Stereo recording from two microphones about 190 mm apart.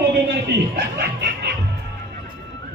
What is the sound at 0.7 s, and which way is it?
Speech, 60° right (ahead or behind).